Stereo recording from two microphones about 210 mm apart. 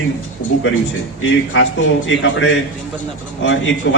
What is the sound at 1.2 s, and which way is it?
A man's voice, 65° left (ahead or behind).